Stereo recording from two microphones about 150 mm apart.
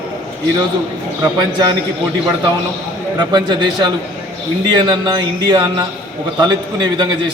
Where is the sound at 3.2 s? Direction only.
30° right (ahead or behind).